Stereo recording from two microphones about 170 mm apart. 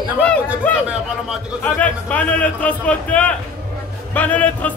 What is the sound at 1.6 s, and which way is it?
A man's voice, 10° left (ahead or behind).